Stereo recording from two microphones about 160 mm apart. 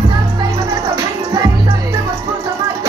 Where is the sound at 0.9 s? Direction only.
20° right (ahead or behind).